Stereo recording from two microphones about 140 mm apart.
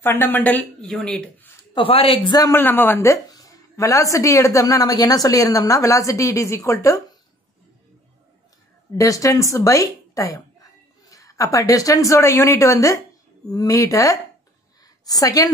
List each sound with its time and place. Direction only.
0.0 s speech: 15° left (ahead or behind)
1.7 s speech: 40° left (ahead or behind)
2.3 s a woman's voice: 25° left (ahead or behind)
2.6 s a woman's voice: 15° left (ahead or behind)
8.9 s a woman's voice: 25° left (ahead or behind)